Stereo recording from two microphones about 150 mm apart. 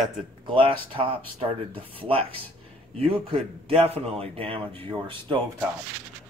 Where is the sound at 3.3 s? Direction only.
40° right (ahead or behind).